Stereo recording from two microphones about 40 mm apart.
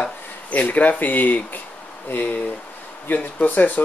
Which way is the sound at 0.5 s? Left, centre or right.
Left.